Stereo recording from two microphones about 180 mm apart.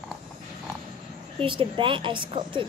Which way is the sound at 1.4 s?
30° right (ahead or behind).